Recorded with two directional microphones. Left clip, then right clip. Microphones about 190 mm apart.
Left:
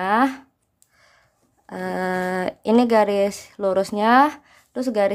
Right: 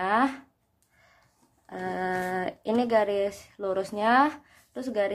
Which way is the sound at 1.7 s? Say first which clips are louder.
Left 5 dB; 40° left (ahead or behind).